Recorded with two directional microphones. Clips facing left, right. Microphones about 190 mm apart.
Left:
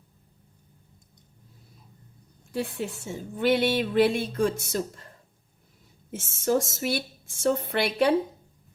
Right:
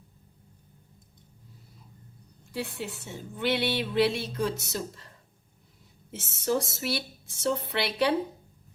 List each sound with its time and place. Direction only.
2.5 s a woman's voice: 50° left (ahead or behind)
6.1 s a woman's voice: 50° left (ahead or behind)